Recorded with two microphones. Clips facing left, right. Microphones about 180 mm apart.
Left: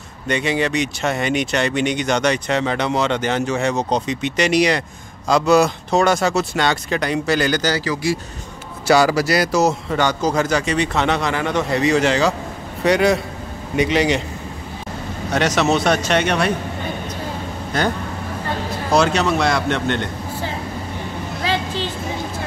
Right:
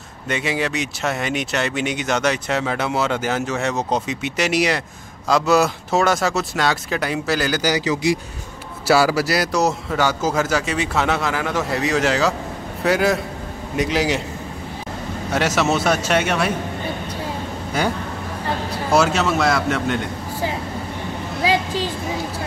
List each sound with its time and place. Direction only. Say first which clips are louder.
0.3 s speech: left 3 dB; 5° right (ahead or behind)
7.7 s speech: right 1 dB; 20° right (ahead or behind)
8.8 s speech: left 2 dB; 5° right (ahead or behind)
15.3 s speech: left 2 dB; 5° right (ahead or behind)
17.7 s speech: left 1 dB; 10° right (ahead or behind)